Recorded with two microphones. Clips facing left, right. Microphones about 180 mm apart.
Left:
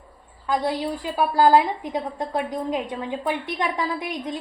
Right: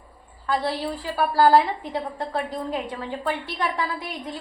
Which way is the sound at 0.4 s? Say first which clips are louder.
Left 1 dB; 15° left (ahead or behind).